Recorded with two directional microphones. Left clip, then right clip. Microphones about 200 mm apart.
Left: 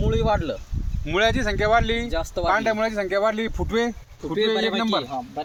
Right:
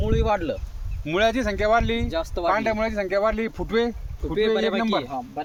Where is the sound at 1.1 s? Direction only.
40° right (ahead or behind).